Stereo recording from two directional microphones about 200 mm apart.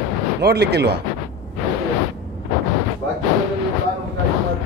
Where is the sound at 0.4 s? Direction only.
55° right (ahead or behind).